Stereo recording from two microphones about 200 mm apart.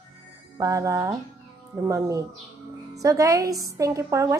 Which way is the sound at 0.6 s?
15° right (ahead or behind).